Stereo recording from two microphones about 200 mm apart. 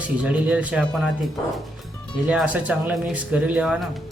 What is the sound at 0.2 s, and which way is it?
Speech, 5° right (ahead or behind).